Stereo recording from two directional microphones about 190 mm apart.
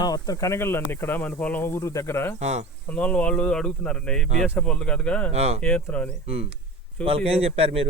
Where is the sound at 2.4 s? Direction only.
35° right (ahead or behind).